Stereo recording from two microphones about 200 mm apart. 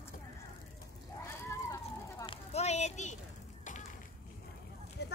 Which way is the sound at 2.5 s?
35° left (ahead or behind).